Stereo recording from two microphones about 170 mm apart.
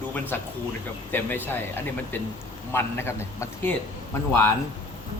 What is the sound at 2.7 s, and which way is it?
A man's voice, 15° left (ahead or behind).